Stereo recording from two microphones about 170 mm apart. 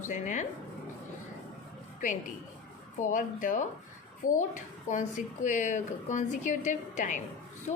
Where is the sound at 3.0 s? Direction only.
50° left (ahead or behind).